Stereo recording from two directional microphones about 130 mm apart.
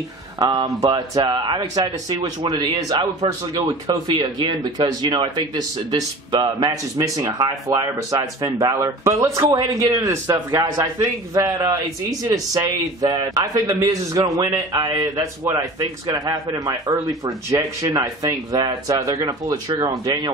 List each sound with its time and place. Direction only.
0.4 s speech: 35° right (ahead or behind)
0.7 s a man's voice: 25° right (ahead or behind)